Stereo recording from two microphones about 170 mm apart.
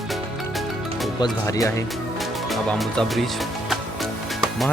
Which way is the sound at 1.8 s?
Centre (ahead or behind).